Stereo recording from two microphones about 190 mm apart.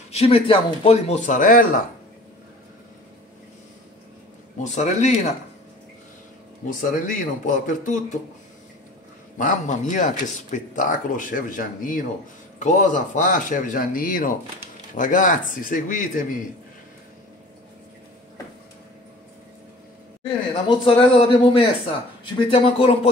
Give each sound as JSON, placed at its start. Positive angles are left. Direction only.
{"t": 0.1, "sound": "speech", "side_deg": 30}
{"t": 4.7, "sound": "speech", "side_deg": 35}
{"t": 6.7, "sound": "speech", "side_deg": 45}
{"t": 9.4, "sound": "speech", "side_deg": 40}
{"t": 20.2, "sound": "speech", "side_deg": 30}